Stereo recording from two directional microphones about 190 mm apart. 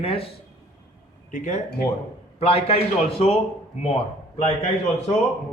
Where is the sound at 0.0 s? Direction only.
30° left (ahead or behind).